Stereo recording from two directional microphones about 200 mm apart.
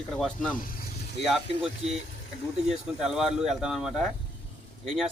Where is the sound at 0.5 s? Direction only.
45° left (ahead or behind).